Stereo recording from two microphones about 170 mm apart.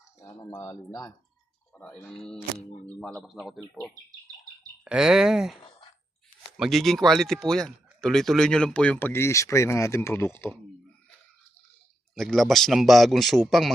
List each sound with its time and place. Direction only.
0.2 s speech: 20° left (ahead or behind)
1.7 s speech: 5° left (ahead or behind)
4.9 s speech: 5° right (ahead or behind)
6.6 s speech: centre (ahead or behind)
12.1 s speech: centre (ahead or behind)